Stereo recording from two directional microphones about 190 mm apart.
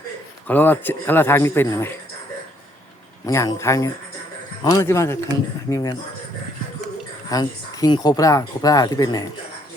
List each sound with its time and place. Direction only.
0.4 s speech: 10° left (ahead or behind)
3.2 s speech: 15° left (ahead or behind)
7.3 s speech: 20° left (ahead or behind)